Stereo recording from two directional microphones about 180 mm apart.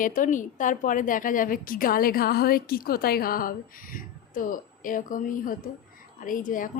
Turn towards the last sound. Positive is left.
turn(degrees=45)  # may be behind; listen again after turning